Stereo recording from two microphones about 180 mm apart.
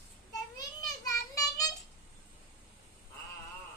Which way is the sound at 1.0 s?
20° left (ahead or behind).